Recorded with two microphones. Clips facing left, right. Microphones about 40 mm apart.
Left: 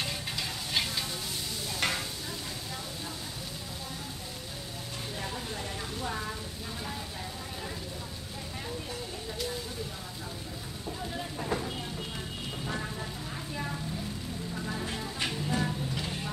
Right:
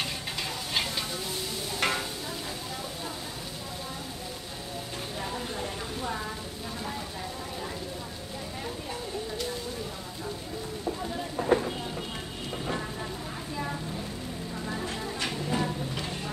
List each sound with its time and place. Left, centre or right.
0.0 s stir: centre
11.4 s vehicle: right
15.5 s a sound: centre